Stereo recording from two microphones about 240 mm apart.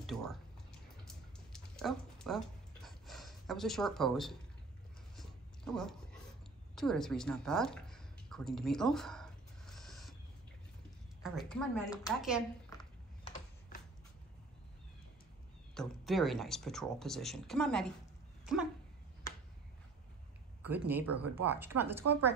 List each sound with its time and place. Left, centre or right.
0.0 s speech: centre
1.0 s a sound: centre
5.1 s dog: centre
6.7 s a sound: centre
11.2 s speech: centre
13.2 s a sound: left
15.7 s speech: centre
18.4 s dog: centre
20.6 s a woman's voice: centre